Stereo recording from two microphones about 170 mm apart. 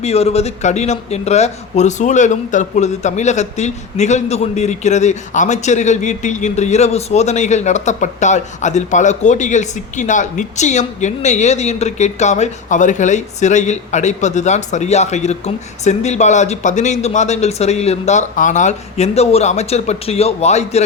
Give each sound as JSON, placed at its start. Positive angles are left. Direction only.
{"t": 0.0, "sound": "a man's voice", "side_deg": 35}